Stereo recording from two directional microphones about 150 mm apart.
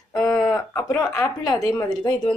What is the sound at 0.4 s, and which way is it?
Speech, 20° left (ahead or behind).